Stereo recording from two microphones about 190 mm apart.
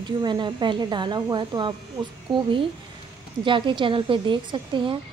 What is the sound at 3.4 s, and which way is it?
A woman's voice, 25° right (ahead or behind).